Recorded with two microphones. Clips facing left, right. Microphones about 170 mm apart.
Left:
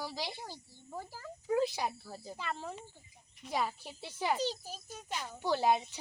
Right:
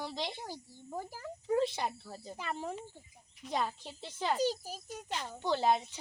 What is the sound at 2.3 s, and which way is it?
Speech, 15° right (ahead or behind).